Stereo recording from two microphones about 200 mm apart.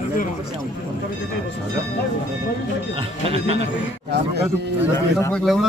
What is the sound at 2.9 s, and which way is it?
Speech, 30° right (ahead or behind).